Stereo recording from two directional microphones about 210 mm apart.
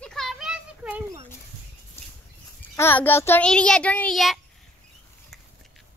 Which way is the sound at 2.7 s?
10° left (ahead or behind).